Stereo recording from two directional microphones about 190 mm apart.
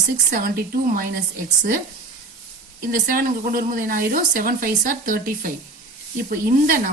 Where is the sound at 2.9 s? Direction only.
50° right (ahead or behind).